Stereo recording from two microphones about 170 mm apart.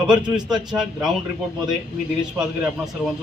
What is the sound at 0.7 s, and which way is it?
Speech, 5° right (ahead or behind).